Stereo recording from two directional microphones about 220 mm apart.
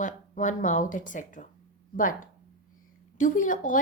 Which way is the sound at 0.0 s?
35° left (ahead or behind).